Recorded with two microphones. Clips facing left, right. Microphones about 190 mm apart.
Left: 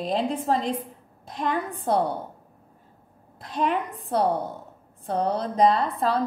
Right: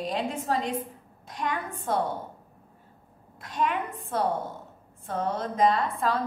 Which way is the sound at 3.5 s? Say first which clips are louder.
Left 3 dB; 40° left (ahead or behind).